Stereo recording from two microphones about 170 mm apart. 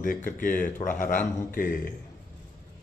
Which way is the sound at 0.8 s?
50° left (ahead or behind).